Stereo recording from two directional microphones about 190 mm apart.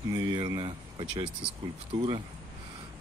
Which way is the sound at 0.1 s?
20° right (ahead or behind).